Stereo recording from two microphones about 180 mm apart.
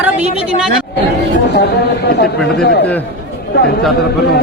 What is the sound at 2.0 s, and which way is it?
Speech, 65° left (ahead or behind).